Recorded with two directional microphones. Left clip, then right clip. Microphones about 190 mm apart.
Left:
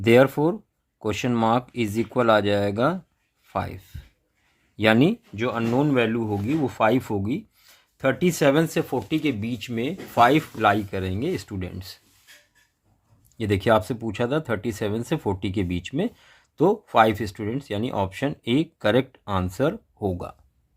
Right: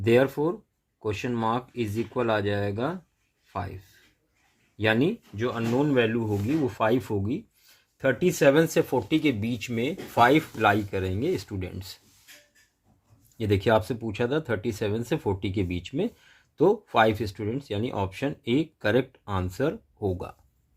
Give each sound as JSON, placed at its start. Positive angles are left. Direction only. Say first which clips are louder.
{"t": 0.0, "sound": "speech", "louder": "left 5 dB", "side_deg": 40}
{"t": 4.8, "sound": "speech", "louder": "left 5 dB", "side_deg": 40}
{"t": 13.3, "sound": "speech", "louder": "left 2 dB", "side_deg": 15}